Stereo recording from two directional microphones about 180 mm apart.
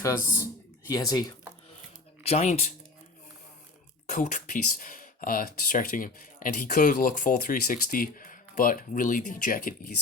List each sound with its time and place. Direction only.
0.9 s speech: 20° left (ahead or behind)
2.2 s speech: 40° left (ahead or behind)
4.1 s speech: 45° left (ahead or behind)